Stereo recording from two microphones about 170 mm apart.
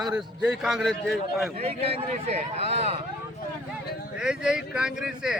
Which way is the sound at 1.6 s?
35° right (ahead or behind).